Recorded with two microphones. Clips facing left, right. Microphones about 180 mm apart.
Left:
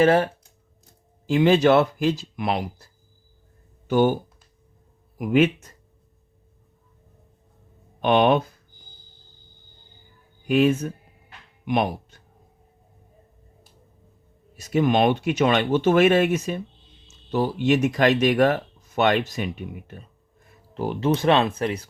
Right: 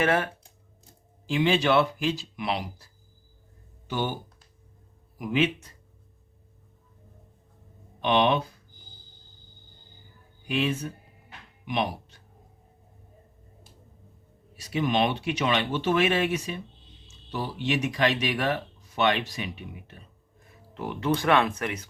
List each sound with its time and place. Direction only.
0.0 s speech: 30° left (ahead or behind)
1.3 s speech: 45° left (ahead or behind)
5.1 s speech: 50° left (ahead or behind)
8.0 s speech: 50° left (ahead or behind)
10.4 s speech: 45° left (ahead or behind)
11.6 s a sound: 50° left (ahead or behind)
14.5 s speech: 45° left (ahead or behind)
20.7 s speech: 30° left (ahead or behind)